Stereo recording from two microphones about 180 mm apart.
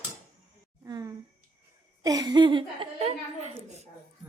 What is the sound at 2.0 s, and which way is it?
A woman's voice, 20° right (ahead or behind).